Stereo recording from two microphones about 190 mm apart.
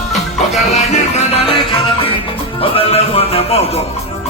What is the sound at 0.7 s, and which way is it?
Music, 35° left (ahead or behind).